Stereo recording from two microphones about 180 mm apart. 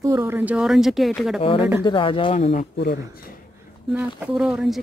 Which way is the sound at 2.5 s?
65° left (ahead or behind).